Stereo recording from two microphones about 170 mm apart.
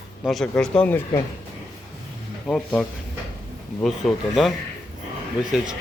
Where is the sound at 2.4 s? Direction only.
5° left (ahead or behind).